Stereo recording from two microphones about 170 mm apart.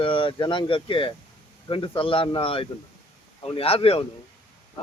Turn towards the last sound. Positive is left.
turn(degrees=35)  # may be behind; listen again after turning